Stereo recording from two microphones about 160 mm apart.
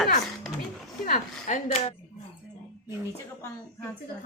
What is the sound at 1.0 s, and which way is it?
Speech, 55° left (ahead or behind).